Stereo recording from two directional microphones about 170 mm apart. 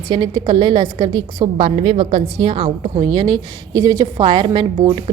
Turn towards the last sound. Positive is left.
turn(degrees=-30)  # may be behind; listen again after turning